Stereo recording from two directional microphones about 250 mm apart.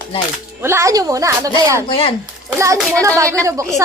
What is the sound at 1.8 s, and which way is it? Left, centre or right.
Speech, left.